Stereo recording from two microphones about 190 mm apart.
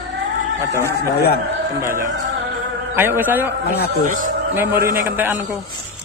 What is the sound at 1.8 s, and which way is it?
A man's voice, 15° right (ahead or behind).